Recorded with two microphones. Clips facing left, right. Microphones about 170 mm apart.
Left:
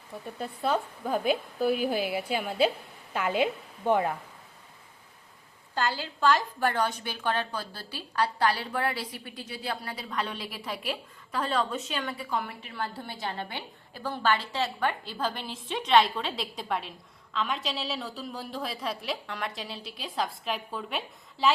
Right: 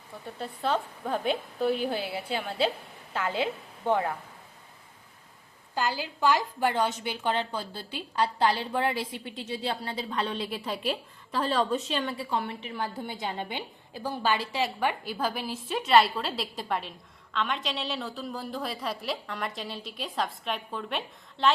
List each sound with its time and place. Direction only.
0.3 s a woman's voice: 5° left (ahead or behind)
5.7 s a woman's voice: 15° right (ahead or behind); by 12.5 s 30° right (ahead or behind)
12.6 s a woman's voice: 15° right (ahead or behind); by 21.5 s centre (ahead or behind)